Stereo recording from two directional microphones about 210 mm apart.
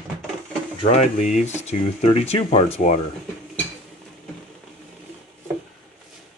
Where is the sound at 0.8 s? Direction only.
35° left (ahead or behind).